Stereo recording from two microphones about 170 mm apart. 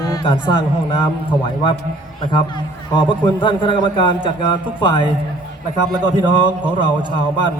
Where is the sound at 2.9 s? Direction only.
30° left (ahead or behind).